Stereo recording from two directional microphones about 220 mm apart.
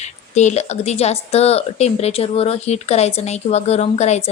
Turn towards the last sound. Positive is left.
turn(degrees=30)  # may be behind; listen again after turning